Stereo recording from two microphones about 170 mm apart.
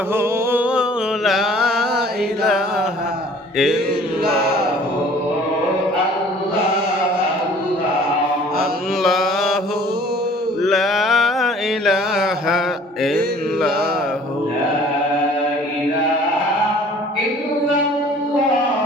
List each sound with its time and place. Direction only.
0.1 s music: 10° right (ahead or behind)
4.2 s chant: 70° right (ahead or behind)
9.0 s mantra: centre (ahead or behind)
10.6 s mantra: centre (ahead or behind)